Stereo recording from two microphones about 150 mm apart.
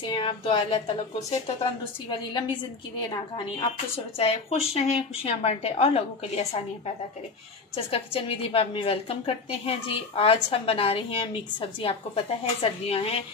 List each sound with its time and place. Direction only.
0.0 s a woman's voice: 35° left (ahead or behind)
3.3 s a woman's voice: 40° left (ahead or behind)
7.7 s a woman's voice: 40° left (ahead or behind)